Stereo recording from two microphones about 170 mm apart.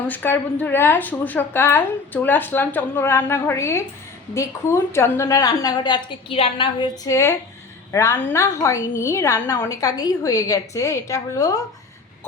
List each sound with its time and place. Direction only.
0.1 s a woman's voice: 10° left (ahead or behind)